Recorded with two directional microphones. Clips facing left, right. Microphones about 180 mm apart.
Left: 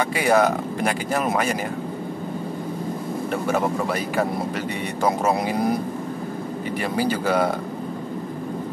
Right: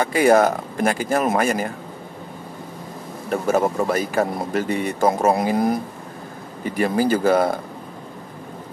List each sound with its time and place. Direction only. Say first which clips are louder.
0.0 s speech: right 3 dB; 45° right (ahead or behind)
3.4 s speech: right 5 dB; 45° right (ahead or behind)
6.8 s speech: right 6 dB; 45° right (ahead or behind)